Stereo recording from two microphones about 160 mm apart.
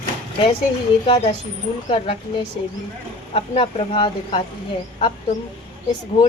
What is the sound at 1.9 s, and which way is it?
A woman's voice, 35° left (ahead or behind).